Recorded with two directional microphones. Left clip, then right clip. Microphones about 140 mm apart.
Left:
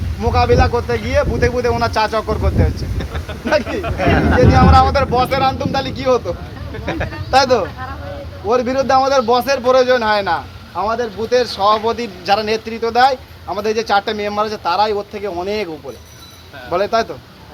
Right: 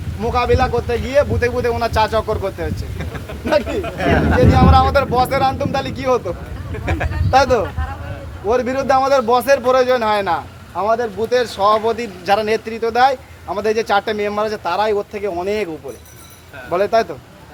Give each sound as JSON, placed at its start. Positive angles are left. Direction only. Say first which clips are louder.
{"t": 0.2, "sound": "a man's voice", "louder": "left 2 dB", "side_deg": -30}
{"t": 3.9, "sound": "a man's voice", "louder": "left 2 dB", "side_deg": -40}
{"t": 6.9, "sound": "speech", "louder": "left 1 dB", "side_deg": -65}
{"t": 7.3, "sound": "speech", "louder": "left 1 dB", "side_deg": -15}
{"t": 8.4, "sound": "a man's voice", "louder": "left 1 dB", "side_deg": -25}